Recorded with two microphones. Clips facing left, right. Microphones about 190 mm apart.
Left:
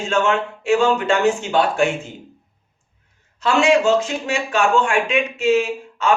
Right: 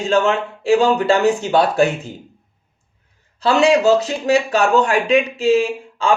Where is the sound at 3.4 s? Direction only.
35° right (ahead or behind).